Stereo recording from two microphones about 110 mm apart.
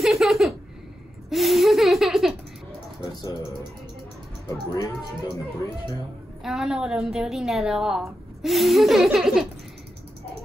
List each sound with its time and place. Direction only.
0.0 s a sound: centre (ahead or behind)
1.3 s laughter: centre (ahead or behind)
3.2 s music: 30° left (ahead or behind)
4.5 s speech: 30° left (ahead or behind)
6.4 s a woman's voice: 5° right (ahead or behind)